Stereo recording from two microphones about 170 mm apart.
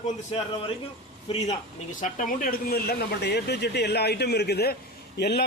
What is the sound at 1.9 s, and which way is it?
Speech, 50° left (ahead or behind).